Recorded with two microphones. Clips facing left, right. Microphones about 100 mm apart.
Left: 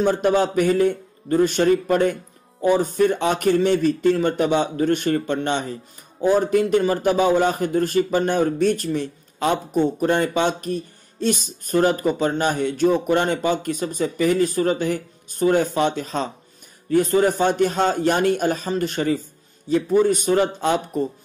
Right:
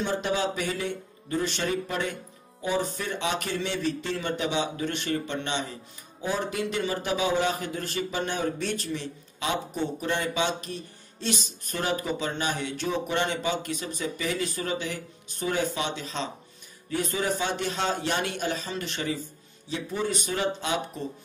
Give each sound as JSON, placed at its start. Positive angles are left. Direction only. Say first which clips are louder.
{"t": 0.0, "sound": "a man's voice", "louder": "left 9 dB", "side_deg": 45}